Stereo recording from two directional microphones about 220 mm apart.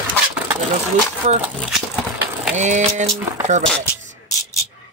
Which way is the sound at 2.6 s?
35° right (ahead or behind).